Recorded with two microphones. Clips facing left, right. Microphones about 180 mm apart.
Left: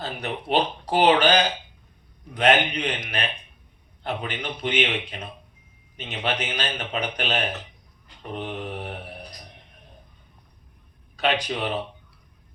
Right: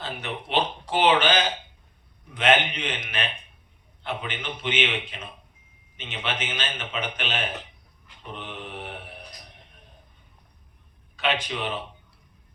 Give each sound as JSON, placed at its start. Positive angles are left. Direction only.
{"t": 0.0, "sound": "a man's voice", "side_deg": 40}
{"t": 11.2, "sound": "a man's voice", "side_deg": 40}